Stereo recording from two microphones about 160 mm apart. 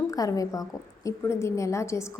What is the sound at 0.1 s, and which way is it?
A woman's voice, 20° left (ahead or behind).